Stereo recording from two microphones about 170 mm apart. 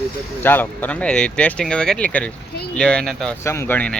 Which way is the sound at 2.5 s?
70° left (ahead or behind).